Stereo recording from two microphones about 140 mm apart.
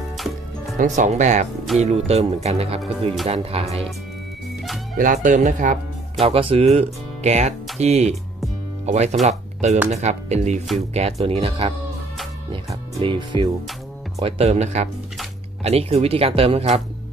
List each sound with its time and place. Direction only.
0.7 s speech: 60° right (ahead or behind)
4.9 s speech: 70° right (ahead or behind)
6.1 s speech: 45° right (ahead or behind)
13.0 s speech: 35° right (ahead or behind)
14.2 s speech: 50° right (ahead or behind)